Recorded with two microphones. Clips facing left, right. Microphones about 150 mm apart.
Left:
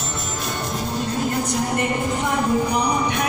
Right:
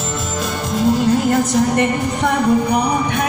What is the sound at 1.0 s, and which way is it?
A woman's voice, 90° right.